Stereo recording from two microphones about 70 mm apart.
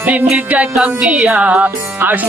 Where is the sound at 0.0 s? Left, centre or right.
Right.